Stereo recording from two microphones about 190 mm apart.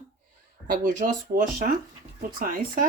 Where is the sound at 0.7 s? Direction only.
45° right (ahead or behind).